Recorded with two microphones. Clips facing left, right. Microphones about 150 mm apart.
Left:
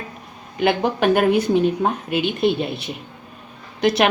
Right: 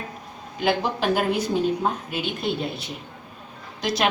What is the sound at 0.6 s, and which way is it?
A woman's voice, 60° left (ahead or behind).